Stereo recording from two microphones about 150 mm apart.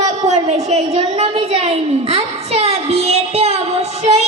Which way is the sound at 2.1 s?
45° right (ahead or behind).